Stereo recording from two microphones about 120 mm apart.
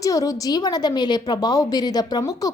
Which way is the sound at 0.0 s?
30° left (ahead or behind).